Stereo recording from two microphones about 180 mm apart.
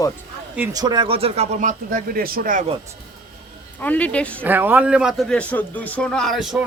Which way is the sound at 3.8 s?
5° left (ahead or behind).